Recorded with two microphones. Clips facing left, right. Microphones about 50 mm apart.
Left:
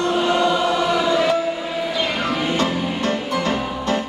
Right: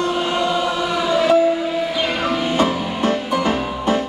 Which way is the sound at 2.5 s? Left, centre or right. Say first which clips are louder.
Right 2 dB; centre.